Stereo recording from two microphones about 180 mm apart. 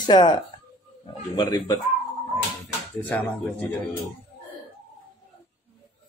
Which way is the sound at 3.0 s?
10° left (ahead or behind).